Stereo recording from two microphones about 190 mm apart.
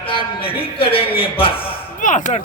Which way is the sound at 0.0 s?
30° left (ahead or behind).